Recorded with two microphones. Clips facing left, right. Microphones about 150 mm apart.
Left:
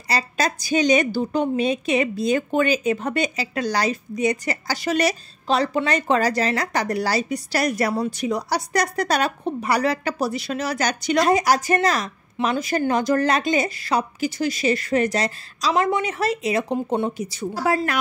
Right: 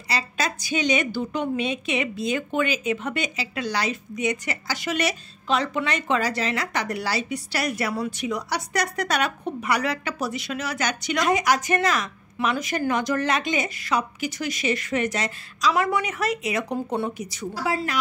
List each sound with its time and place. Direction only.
0.1 s a woman's voice: 40° left (ahead or behind)
17.6 s speech: 50° left (ahead or behind)